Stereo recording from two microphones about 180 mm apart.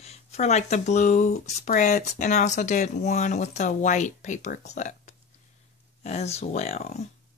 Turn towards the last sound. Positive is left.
turn(degrees=35)  # may be behind; listen again after turning